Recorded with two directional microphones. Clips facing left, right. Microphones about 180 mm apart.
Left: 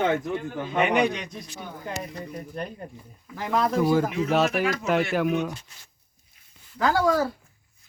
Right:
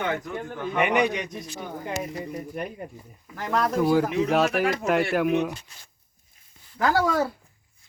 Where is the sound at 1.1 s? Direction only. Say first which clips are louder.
Right 3 dB; 15° right (ahead or behind).